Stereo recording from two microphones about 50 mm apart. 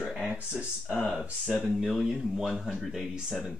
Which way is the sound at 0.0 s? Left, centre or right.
Centre.